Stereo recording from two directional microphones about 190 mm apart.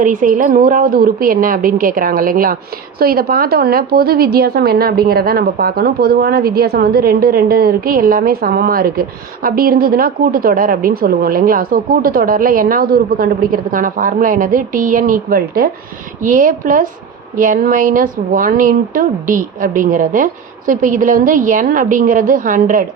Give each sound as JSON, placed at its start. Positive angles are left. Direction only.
{"t": 0.0, "sound": "a woman's voice", "side_deg": -45}